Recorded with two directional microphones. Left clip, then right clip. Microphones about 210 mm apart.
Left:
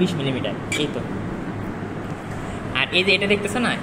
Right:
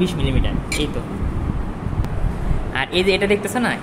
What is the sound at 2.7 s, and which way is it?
A woman's voice, 40° right (ahead or behind).